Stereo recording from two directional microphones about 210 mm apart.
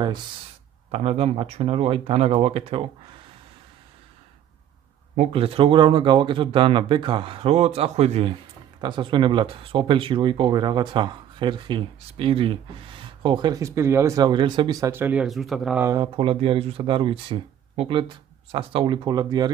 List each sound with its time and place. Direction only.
0.9 s speech: 30° right (ahead or behind)
5.1 s speech: 30° right (ahead or behind); by 15.9 s 5° right (ahead or behind)
15.9 s speech: 20° right (ahead or behind)